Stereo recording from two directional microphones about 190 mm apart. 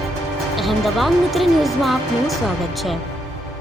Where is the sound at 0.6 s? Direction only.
Centre (ahead or behind).